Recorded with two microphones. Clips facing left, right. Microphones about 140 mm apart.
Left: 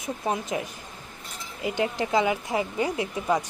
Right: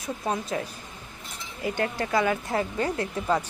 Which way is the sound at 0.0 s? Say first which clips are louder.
Left 1 dB; 20° left (ahead or behind).